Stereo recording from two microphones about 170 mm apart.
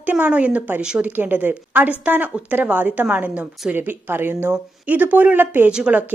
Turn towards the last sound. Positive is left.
turn(degrees=-5)  # may be behind; listen again after turning